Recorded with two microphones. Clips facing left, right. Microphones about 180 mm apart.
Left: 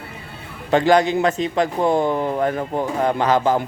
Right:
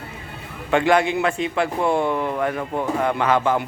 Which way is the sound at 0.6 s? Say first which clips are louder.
Left 2 dB; 35° left (ahead or behind).